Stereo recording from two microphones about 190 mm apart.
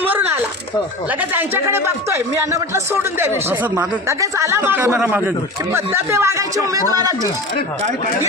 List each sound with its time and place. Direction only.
1.3 s speech: 10° right (ahead or behind)